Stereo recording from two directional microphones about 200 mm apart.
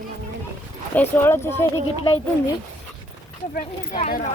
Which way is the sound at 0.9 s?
10° left (ahead or behind).